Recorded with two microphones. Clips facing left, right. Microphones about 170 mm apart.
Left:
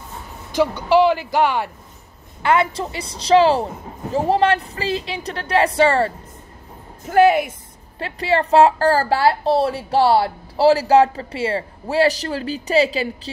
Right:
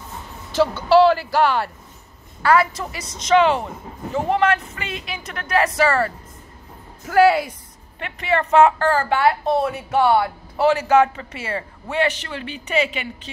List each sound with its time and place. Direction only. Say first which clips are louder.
0.5 s a woman's voice: right 1 dB; 15° left (ahead or behind)
8.0 s a woman's voice: left 2 dB; 30° left (ahead or behind)